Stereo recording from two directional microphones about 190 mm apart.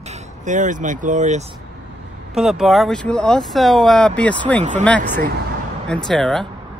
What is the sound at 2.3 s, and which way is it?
Speech, centre (ahead or behind).